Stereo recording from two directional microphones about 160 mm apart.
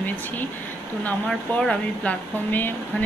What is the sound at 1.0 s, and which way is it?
Speech, 5° left (ahead or behind).